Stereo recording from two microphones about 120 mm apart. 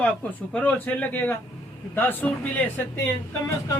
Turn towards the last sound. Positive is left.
turn(degrees=20)  # may be behind; listen again after turning